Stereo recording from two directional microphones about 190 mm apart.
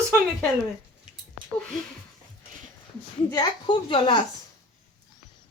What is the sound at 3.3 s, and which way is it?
Speech, 25° left (ahead or behind).